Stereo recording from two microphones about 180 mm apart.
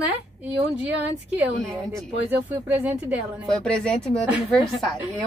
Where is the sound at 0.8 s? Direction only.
10° right (ahead or behind).